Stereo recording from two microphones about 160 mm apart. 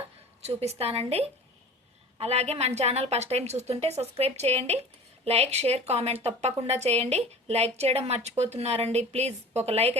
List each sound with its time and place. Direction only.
0.4 s a woman's voice: 40° right (ahead or behind)